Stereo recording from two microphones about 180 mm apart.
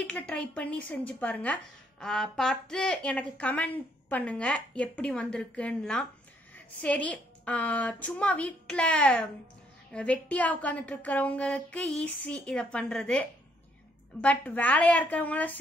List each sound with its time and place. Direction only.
0.0 s a woman's voice: 5° left (ahead or behind)